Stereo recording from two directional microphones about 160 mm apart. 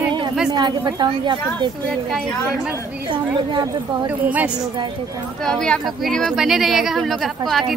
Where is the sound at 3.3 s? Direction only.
25° right (ahead or behind).